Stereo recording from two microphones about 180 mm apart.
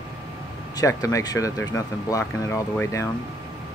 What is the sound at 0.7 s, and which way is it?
Speech, 20° left (ahead or behind).